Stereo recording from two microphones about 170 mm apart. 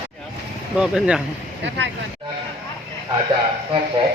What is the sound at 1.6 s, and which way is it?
Speech, 90° right.